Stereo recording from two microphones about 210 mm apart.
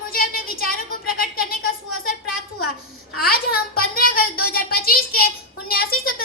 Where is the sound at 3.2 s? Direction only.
45° left (ahead or behind).